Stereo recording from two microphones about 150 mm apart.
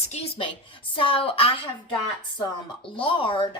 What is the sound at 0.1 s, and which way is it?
Speech, 40° left (ahead or behind).